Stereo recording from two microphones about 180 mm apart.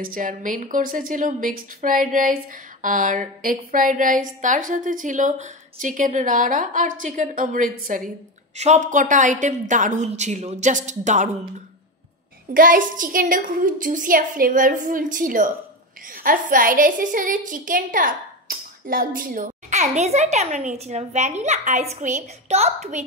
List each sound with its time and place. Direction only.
0.0 s a woman's voice: 50° right (ahead or behind)
12.5 s a woman's voice: 50° right (ahead or behind)